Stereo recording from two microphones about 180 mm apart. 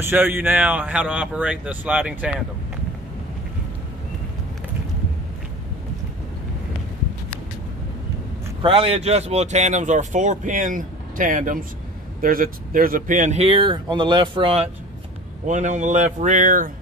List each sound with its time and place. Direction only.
0.0 s speech: 10° right (ahead or behind)
8.6 s speech: 30° right (ahead or behind)
15.4 s speech: 45° right (ahead or behind)